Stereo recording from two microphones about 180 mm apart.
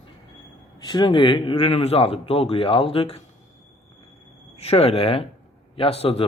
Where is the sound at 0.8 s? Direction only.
25° left (ahead or behind).